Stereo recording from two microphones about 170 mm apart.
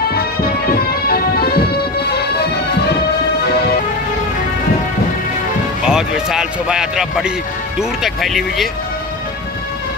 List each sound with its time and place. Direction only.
0.1 s music: 65° left (ahead or behind)
5.9 s speech: 5° right (ahead or behind)